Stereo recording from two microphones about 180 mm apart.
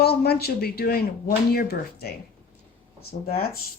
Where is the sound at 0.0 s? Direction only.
60° left (ahead or behind).